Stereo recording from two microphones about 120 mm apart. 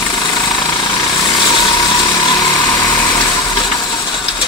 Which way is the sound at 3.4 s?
35° left (ahead or behind).